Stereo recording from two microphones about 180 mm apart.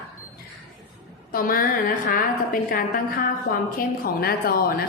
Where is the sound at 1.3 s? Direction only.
50° left (ahead or behind).